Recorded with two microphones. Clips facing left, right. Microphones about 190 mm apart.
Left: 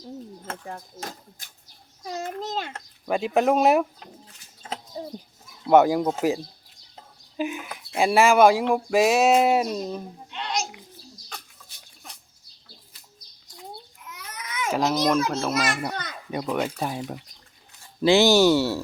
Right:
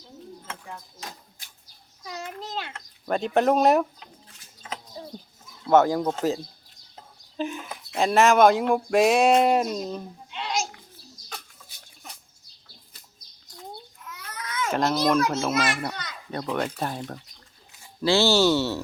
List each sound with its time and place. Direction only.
0.4 s speech: 45° left (ahead or behind)
3.1 s speech: 5° left (ahead or behind)
5.6 s speech: 15° left (ahead or behind); by 10.7 s centre (ahead or behind)
14.1 s babbling: 20° left (ahead or behind)
14.7 s a child's voice: 5° left (ahead or behind)
16.3 s speech: 10° left (ahead or behind)